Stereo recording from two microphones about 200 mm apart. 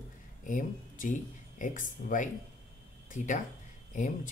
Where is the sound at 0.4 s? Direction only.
40° left (ahead or behind).